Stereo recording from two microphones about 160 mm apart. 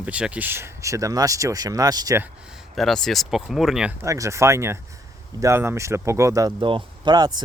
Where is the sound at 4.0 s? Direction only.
20° right (ahead or behind).